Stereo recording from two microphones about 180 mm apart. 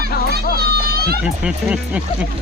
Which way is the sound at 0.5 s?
60° right (ahead or behind).